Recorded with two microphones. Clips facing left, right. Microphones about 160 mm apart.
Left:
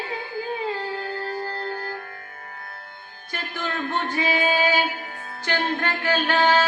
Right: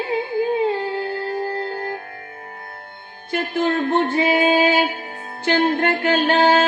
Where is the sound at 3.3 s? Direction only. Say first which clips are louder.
Right 10 dB; 25° right (ahead or behind).